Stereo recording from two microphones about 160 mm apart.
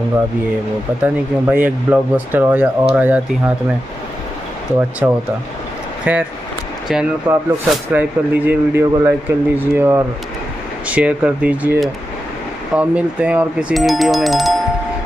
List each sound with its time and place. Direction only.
1.0 s speech: 10° right (ahead or behind)
5.0 s speech: 10° right (ahead or behind)